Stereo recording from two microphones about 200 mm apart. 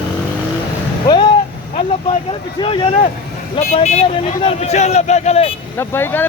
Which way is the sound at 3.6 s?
35° left (ahead or behind).